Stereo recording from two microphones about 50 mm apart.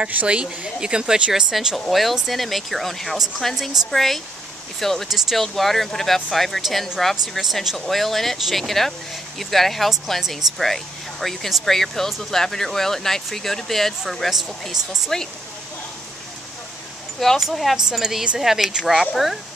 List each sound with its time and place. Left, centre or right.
0.1 s speech: right; by 1.8 s centre
1.9 s speech: centre
17.4 s speech: centre